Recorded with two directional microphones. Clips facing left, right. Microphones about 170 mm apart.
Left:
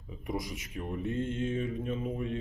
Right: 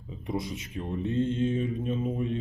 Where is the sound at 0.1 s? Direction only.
25° right (ahead or behind).